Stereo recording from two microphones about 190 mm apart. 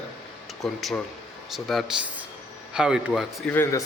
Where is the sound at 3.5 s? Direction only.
10° left (ahead or behind).